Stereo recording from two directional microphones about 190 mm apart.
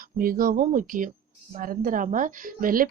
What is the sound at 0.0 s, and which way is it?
Speech, 50° right (ahead or behind).